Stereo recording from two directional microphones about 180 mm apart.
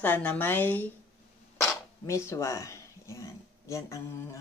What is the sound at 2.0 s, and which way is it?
Speech, 15° left (ahead or behind).